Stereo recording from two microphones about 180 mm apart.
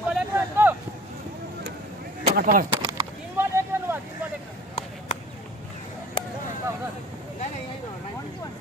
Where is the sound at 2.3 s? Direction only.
50° right (ahead or behind).